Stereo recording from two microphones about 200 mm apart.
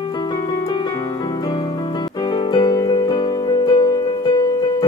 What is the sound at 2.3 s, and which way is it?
Music, 20° left (ahead or behind).